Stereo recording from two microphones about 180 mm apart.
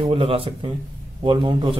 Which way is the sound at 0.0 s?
30° right (ahead or behind).